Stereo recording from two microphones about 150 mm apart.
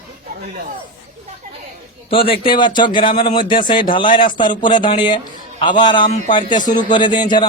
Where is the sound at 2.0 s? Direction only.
35° left (ahead or behind).